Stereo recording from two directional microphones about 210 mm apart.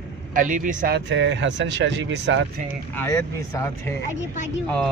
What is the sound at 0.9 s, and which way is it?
Speech, 60° right (ahead or behind).